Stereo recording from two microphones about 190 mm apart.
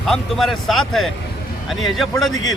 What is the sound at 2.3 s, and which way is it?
Speech, 90° left.